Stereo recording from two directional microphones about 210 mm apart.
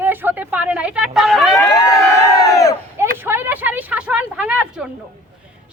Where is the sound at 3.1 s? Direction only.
10° right (ahead or behind).